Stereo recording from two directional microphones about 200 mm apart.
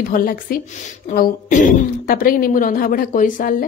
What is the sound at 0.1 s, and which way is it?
A woman's voice, 45° left (ahead or behind).